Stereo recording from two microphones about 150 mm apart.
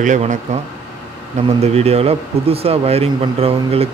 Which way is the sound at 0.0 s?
55° right (ahead or behind).